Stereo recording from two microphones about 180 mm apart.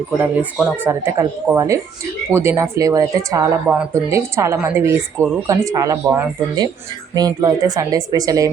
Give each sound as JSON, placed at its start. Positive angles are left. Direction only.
{"t": 0.2, "sound": "a woman's voice", "side_deg": -5}